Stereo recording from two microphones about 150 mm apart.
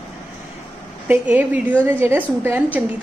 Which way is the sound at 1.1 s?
10° right (ahead or behind).